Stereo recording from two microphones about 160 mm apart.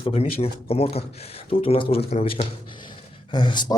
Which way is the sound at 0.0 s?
40° left (ahead or behind).